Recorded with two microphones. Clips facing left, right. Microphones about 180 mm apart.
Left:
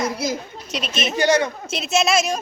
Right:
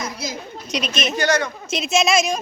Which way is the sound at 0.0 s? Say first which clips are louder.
Left 6 dB; 60° left (ahead or behind).